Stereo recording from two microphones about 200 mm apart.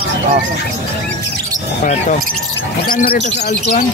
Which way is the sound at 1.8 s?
40° left (ahead or behind).